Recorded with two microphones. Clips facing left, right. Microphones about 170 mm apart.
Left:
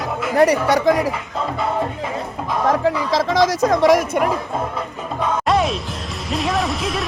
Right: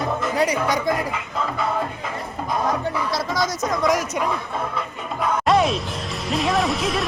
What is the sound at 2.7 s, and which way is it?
Speech, 90° left.